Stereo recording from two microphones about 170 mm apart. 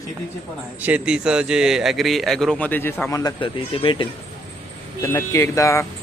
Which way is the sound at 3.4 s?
30° left (ahead or behind).